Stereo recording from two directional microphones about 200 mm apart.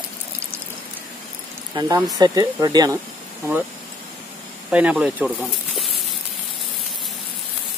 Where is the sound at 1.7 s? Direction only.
20° right (ahead or behind).